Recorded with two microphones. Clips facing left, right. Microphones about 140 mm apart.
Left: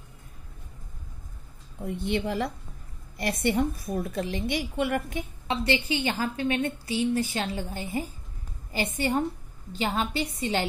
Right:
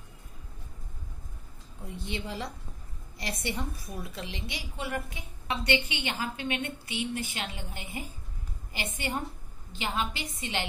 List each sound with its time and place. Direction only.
1.9 s a woman's voice: 60° left (ahead or behind)
5.5 s a woman's voice: 30° left (ahead or behind)